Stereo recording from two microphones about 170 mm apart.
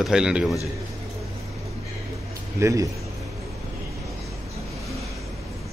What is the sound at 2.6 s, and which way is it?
Speech, 20° right (ahead or behind).